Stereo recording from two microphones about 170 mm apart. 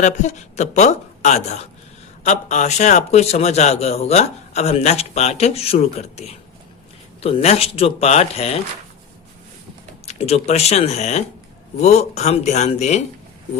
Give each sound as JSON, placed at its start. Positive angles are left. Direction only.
{"t": 0.0, "sound": "a man's voice", "side_deg": 45}
{"t": 10.1, "sound": "a man's voice", "side_deg": 40}